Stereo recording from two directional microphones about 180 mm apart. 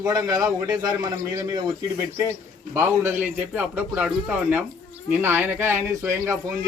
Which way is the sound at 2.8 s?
10° right (ahead or behind).